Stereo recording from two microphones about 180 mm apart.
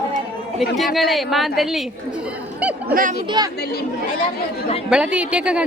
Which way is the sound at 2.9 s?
50° right (ahead or behind).